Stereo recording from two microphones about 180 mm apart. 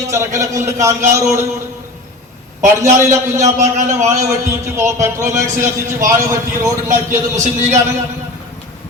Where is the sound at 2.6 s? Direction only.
15° right (ahead or behind).